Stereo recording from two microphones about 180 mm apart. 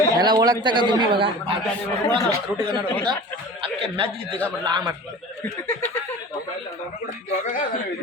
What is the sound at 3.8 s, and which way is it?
A man's voice, 30° right (ahead or behind).